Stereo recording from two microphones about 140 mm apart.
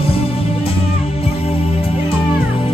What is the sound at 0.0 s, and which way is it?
Music, 45° left (ahead or behind).